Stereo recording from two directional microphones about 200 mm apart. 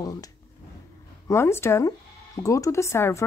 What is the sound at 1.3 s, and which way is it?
Speech, 10° left (ahead or behind).